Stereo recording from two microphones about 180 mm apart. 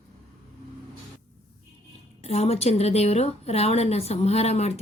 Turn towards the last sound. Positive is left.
turn(degrees=35)  # may be behind; listen again after turning